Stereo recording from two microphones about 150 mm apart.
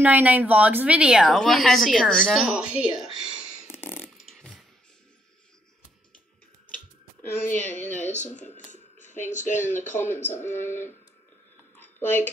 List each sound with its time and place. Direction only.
0.0 s a woman's voice: 10° right (ahead or behind)
3.7 s fart: 15° left (ahead or behind)
4.2 s a sound: centre (ahead or behind)
7.5 s speech: 10° left (ahead or behind)
8.1 s speech: 55° left (ahead or behind)
9.9 s speech: 15° left (ahead or behind)
11.8 s a sound: 10° left (ahead or behind)